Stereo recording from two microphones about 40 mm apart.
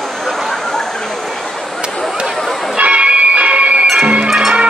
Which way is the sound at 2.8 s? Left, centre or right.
Right.